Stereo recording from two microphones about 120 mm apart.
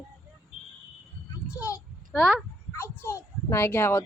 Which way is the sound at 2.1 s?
Centre (ahead or behind).